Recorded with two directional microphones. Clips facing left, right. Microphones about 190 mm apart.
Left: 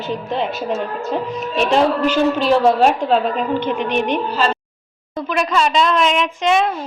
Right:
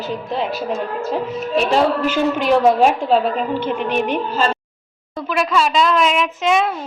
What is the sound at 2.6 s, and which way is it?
A woman's voice, 5° right (ahead or behind).